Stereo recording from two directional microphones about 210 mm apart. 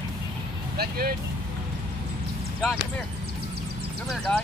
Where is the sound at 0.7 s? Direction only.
45° right (ahead or behind).